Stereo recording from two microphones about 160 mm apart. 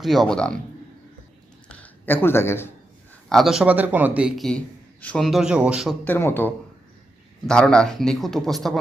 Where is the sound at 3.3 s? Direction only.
Centre (ahead or behind).